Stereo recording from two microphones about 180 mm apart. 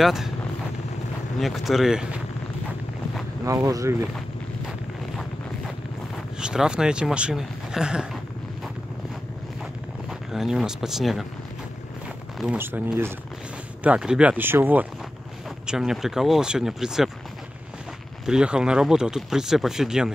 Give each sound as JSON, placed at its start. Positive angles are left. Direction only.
{"t": 0.0, "sound": "speech", "side_deg": 0}
{"t": 1.4, "sound": "speech", "side_deg": 0}
{"t": 3.4, "sound": "speech", "side_deg": -20}
{"t": 6.4, "sound": "speech", "side_deg": -5}
{"t": 10.0, "sound": "speech", "side_deg": 0}
{"t": 12.4, "sound": "speech", "side_deg": -10}
{"t": 18.2, "sound": "speech", "side_deg": -5}